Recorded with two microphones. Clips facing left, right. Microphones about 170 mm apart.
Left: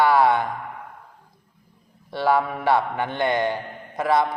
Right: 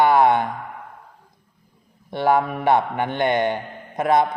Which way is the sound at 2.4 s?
15° right (ahead or behind).